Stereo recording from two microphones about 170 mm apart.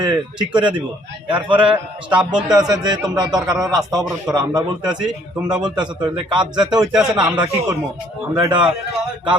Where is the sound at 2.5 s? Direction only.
25° right (ahead or behind).